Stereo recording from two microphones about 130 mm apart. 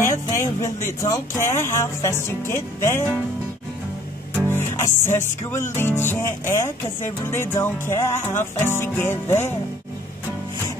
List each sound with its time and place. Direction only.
0.0 s speech: 25° left (ahead or behind)
4.4 s music: 15° left (ahead or behind)